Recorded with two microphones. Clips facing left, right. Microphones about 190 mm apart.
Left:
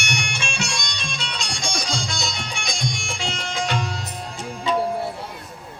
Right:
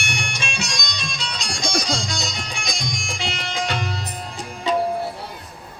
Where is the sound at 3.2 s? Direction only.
35° right (ahead or behind).